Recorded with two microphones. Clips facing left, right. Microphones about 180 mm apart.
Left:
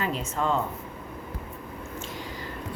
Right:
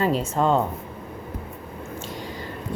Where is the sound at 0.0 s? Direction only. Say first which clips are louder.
Right 7 dB; 35° right (ahead or behind).